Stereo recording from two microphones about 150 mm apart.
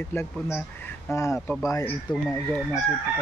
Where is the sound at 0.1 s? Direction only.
15° left (ahead or behind).